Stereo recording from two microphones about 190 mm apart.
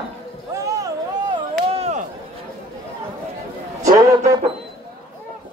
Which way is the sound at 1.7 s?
35° right (ahead or behind).